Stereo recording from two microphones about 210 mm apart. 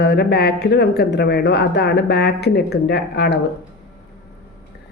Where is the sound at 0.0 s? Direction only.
50° left (ahead or behind).